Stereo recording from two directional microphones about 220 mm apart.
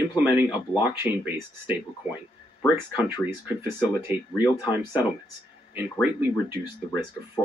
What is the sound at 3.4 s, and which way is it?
Speech, 10° right (ahead or behind).